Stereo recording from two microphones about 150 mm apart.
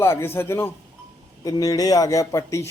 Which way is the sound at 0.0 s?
15° left (ahead or behind).